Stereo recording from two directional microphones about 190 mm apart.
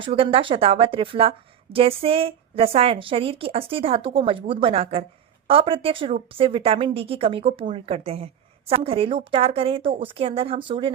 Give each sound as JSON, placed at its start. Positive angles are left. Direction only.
{"t": 0.0, "sound": "a woman's voice", "side_deg": -30}